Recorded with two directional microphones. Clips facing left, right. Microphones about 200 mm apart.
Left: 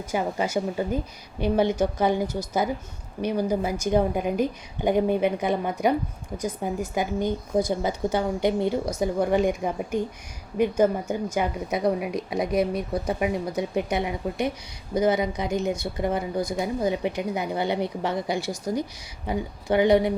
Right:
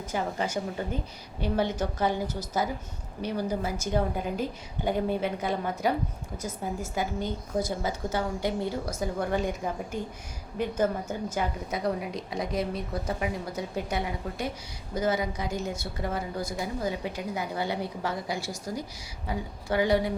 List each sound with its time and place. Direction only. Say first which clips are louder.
0.0 s a woman's voice: left 4 dB; 10° left (ahead or behind)